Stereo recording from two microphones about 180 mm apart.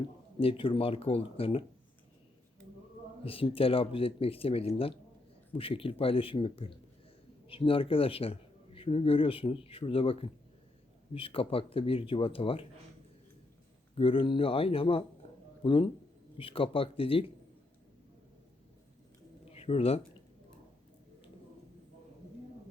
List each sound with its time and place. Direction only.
0.3 s speech: 30° left (ahead or behind)
3.2 s speech: 30° left (ahead or behind)
13.9 s speech: 30° left (ahead or behind)
19.5 s speech: 35° left (ahead or behind)